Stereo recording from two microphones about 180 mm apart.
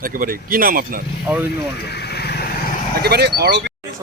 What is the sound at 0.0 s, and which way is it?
Speech, 50° right (ahead or behind).